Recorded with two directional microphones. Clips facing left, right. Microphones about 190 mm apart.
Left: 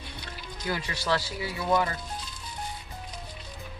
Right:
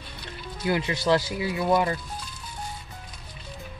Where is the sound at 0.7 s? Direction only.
20° right (ahead or behind).